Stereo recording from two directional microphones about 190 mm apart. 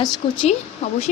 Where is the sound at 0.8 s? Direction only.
35° left (ahead or behind).